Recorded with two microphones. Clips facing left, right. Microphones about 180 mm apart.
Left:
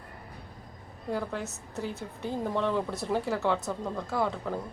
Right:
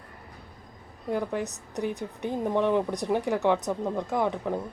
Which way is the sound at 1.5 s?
15° right (ahead or behind).